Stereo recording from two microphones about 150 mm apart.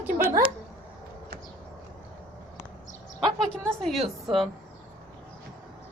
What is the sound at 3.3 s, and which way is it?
A woman's voice, 5° left (ahead or behind).